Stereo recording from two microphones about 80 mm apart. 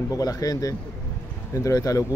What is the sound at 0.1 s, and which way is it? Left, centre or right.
Speech, left.